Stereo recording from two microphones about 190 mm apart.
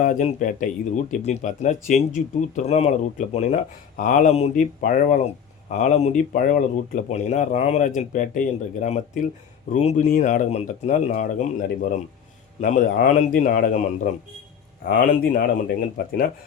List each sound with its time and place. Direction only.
0.0 s speech: 40° left (ahead or behind)
12.5 s speech: 40° left (ahead or behind)